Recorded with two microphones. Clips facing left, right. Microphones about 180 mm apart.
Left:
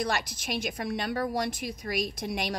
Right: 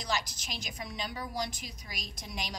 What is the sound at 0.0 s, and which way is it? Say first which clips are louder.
A woman's voice: left 5 dB; 60° left (ahead or behind).